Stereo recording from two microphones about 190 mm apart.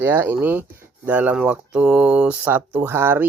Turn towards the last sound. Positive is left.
turn(degrees=-10)  # may be behind; listen again after turning